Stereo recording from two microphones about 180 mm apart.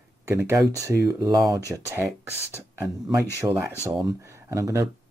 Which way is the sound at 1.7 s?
10° right (ahead or behind).